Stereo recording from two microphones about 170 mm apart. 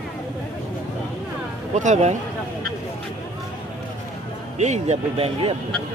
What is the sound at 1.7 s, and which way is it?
Speech, 45° right (ahead or behind).